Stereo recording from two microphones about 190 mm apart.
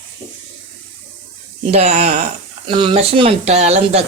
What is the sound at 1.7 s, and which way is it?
Speech, 35° right (ahead or behind).